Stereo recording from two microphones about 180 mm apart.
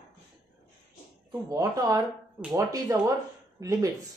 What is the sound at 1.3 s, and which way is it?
Speech, 15° right (ahead or behind).